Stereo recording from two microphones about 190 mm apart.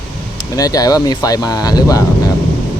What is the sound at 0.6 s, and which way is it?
Speech, 20° left (ahead or behind).